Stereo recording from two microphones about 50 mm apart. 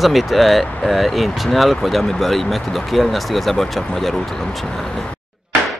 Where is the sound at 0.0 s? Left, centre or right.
Centre.